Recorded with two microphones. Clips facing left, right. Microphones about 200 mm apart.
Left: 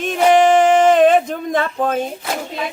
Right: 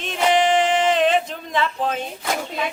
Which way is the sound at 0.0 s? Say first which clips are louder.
Left 6 dB; 50° left (ahead or behind).